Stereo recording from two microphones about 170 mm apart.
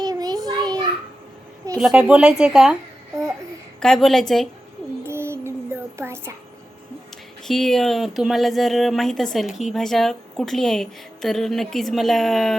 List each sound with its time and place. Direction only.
0.0 s child singing: 20° right (ahead or behind)
1.8 s speech: 5° right (ahead or behind)
3.8 s speech: 5° left (ahead or behind)
5.0 s music: 15° right (ahead or behind)
7.4 s speech: centre (ahead or behind)